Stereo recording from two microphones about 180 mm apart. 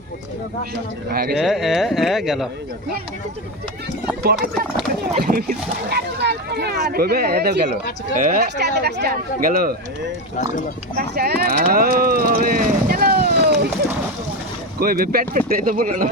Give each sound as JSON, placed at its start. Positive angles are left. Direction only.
{"t": 1.1, "sound": "speech", "side_deg": -55}
{"t": 1.4, "sound": "speech", "side_deg": 0}
{"t": 5.2, "sound": "speech", "side_deg": -55}
{"t": 8.1, "sound": "speech", "side_deg": -45}
{"t": 10.3, "sound": "speech", "side_deg": 40}
{"t": 10.9, "sound": "speech", "side_deg": -60}
{"t": 14.8, "sound": "speech", "side_deg": -55}